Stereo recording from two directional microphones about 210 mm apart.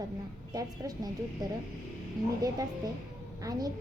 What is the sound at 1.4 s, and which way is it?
Speech, 15° right (ahead or behind).